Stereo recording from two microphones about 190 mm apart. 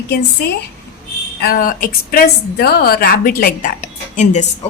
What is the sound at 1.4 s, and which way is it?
A woman's voice, 50° left (ahead or behind).